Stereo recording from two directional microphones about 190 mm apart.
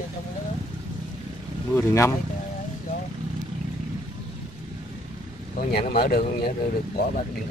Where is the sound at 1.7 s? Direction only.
15° left (ahead or behind).